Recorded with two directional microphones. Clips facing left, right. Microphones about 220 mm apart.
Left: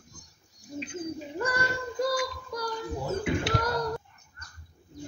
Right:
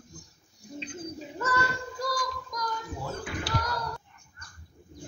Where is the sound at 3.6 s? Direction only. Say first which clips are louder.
Left 5 dB; 50° left (ahead or behind).